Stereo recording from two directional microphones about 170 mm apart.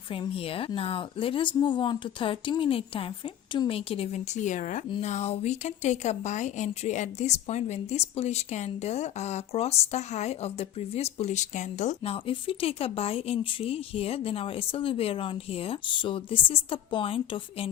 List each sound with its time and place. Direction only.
0.1 s a woman's voice: 35° left (ahead or behind)